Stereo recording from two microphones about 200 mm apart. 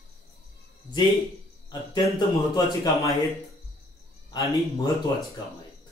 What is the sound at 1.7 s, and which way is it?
A man's voice, 20° left (ahead or behind).